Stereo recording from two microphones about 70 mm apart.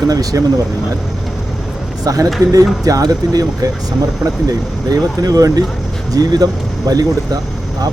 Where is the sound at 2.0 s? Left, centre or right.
Right.